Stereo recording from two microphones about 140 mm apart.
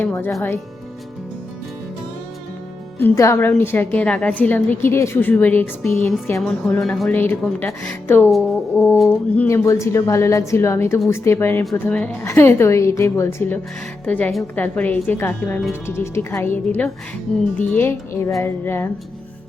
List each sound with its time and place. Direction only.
0.0 s a woman's voice: 15° left (ahead or behind)
3.0 s a woman's voice: 20° left (ahead or behind); by 7.1 s centre (ahead or behind)
7.1 s a woman's voice: 15° left (ahead or behind)
8.3 s a woman's voice: centre (ahead or behind)
8.7 s a woman's voice: 20° left (ahead or behind)
9.5 s a woman's voice: 20° left (ahead or behind)